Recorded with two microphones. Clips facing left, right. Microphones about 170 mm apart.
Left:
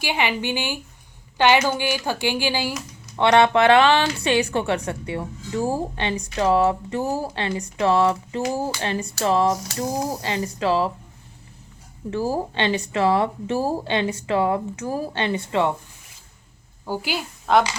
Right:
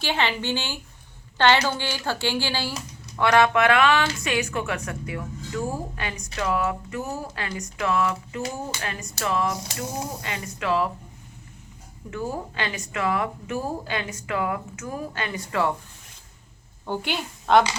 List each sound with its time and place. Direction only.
0.0 s a woman's voice: 15° left (ahead or behind)
3.2 s speech: 25° left (ahead or behind)
12.1 s speech: 30° left (ahead or behind)
16.8 s a woman's voice: 5° left (ahead or behind)